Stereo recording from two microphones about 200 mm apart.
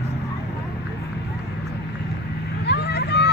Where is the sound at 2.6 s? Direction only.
55° left (ahead or behind).